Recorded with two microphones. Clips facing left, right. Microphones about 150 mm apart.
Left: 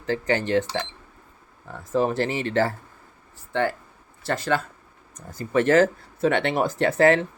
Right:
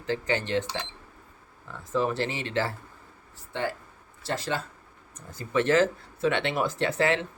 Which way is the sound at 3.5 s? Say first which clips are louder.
Left 6 dB; 60° left (ahead or behind).